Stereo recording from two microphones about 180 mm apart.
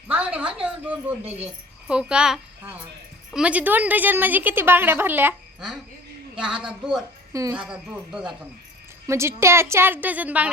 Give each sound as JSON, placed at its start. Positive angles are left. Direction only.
{"t": 0.1, "sound": "a woman's voice", "side_deg": -10}
{"t": 7.3, "sound": "a woman's voice", "side_deg": -15}
{"t": 7.6, "sound": "a woman's voice", "side_deg": -5}
{"t": 9.0, "sound": "a woman's voice", "side_deg": -15}